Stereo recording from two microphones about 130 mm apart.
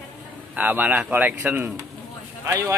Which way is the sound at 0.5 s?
15° right (ahead or behind).